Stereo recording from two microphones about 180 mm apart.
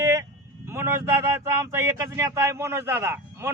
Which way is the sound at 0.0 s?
15° right (ahead or behind).